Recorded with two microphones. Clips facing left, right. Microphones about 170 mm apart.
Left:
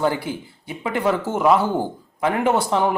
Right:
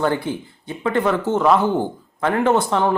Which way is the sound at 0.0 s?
10° left (ahead or behind).